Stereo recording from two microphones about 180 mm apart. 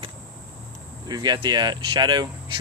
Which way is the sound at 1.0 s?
25° right (ahead or behind).